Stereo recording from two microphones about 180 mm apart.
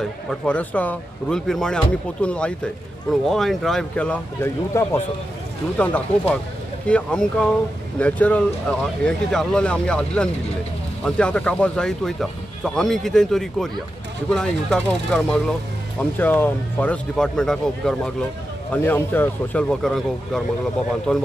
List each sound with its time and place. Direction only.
0.3 s speech: 5° left (ahead or behind)